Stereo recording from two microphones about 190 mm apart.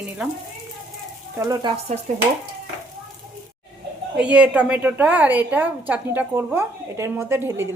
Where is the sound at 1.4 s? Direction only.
20° right (ahead or behind).